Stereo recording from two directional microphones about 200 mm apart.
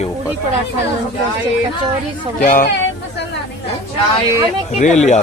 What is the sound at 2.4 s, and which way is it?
Speech, 40° left (ahead or behind).